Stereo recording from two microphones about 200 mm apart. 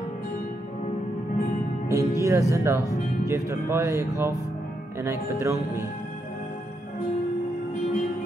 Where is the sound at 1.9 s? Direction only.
15° right (ahead or behind).